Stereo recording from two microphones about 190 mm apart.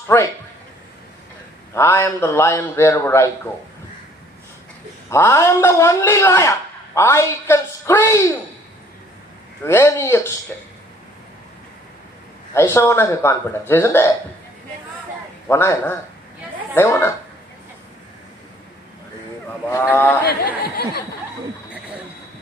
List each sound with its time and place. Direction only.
0.1 s a man's voice: 15° left (ahead or behind)
1.7 s a man's voice: 15° left (ahead or behind)
5.1 s a man's voice: 15° left (ahead or behind)
9.7 s a man's voice: 15° left (ahead or behind)
12.5 s a man's voice: 15° left (ahead or behind)
15.4 s a man's voice: 15° left (ahead or behind)
19.7 s a man's voice: 10° left (ahead or behind)
20.2 s speech: 55° left (ahead or behind)